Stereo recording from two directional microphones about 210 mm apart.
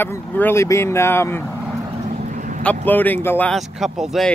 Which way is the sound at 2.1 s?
35° right (ahead or behind).